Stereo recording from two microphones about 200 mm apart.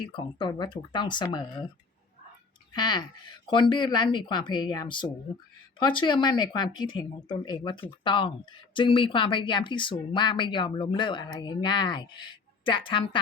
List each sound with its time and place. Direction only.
0.1 s speech: 25° left (ahead or behind)
2.7 s speech: 20° left (ahead or behind)